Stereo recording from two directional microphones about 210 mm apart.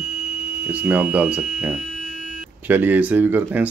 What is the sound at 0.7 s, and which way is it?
Speech, 10° right (ahead or behind).